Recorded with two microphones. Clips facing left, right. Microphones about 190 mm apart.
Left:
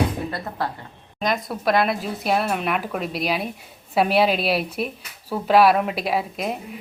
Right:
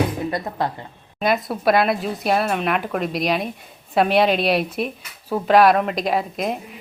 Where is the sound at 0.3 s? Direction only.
15° right (ahead or behind).